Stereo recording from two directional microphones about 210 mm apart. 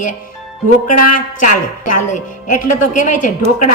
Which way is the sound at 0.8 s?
35° left (ahead or behind).